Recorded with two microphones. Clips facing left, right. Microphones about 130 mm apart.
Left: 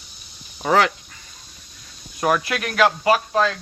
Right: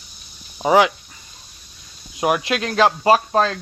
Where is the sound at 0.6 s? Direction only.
15° right (ahead or behind).